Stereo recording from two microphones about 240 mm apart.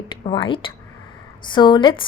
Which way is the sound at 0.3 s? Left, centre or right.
Left.